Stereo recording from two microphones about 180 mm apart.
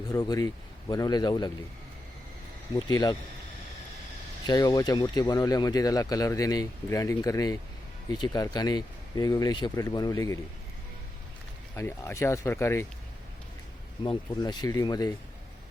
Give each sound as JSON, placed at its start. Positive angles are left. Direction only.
{"t": 0.1, "sound": "speech", "side_deg": 20}
{"t": 2.7, "sound": "speech", "side_deg": 20}
{"t": 4.4, "sound": "speech", "side_deg": 20}
{"t": 11.7, "sound": "speech", "side_deg": 15}
{"t": 14.0, "sound": "speech", "side_deg": 25}